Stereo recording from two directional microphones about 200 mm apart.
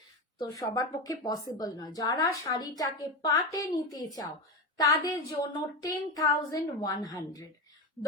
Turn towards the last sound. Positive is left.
turn(degrees=15)  # may be behind; listen again after turning